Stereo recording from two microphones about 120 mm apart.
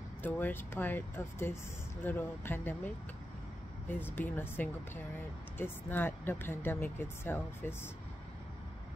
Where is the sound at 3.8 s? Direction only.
15° left (ahead or behind).